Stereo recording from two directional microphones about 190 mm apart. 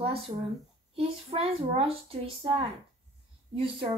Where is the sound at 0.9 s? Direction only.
30° right (ahead or behind).